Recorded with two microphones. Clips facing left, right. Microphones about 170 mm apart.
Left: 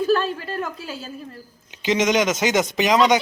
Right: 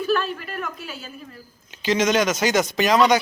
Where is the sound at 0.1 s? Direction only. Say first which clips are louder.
Left 3 dB; 30° left (ahead or behind).